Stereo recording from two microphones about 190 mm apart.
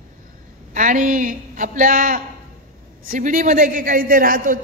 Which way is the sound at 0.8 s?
45° right (ahead or behind).